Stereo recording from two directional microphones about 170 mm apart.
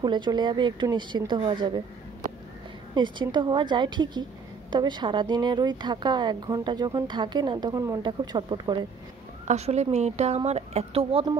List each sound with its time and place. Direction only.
0.0 s a woman's voice: 25° right (ahead or behind)
2.9 s a woman's voice: 25° right (ahead or behind)
9.5 s speech: 40° right (ahead or behind)